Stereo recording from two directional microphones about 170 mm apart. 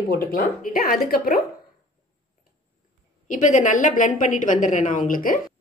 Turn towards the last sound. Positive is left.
turn(degrees=55)  # may be behind; listen again after turning